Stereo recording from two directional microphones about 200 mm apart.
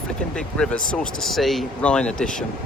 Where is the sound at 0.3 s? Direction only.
5° left (ahead or behind).